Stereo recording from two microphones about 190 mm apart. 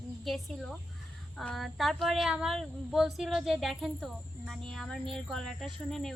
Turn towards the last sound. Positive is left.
turn(degrees=0)  # may be behind; listen again after turning